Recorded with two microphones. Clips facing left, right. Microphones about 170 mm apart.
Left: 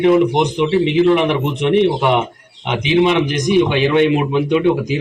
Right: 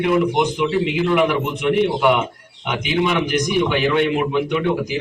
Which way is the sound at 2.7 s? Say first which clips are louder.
Left 6 dB; 20° left (ahead or behind).